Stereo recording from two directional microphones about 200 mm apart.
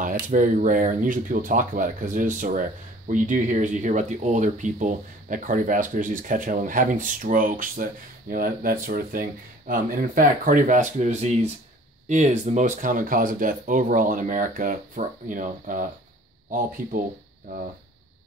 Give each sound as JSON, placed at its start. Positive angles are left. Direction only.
{"t": 0.0, "sound": "speech", "side_deg": -40}